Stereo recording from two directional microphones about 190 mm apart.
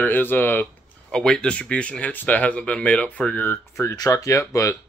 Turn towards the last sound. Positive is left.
turn(degrees=15)  # may be behind; listen again after turning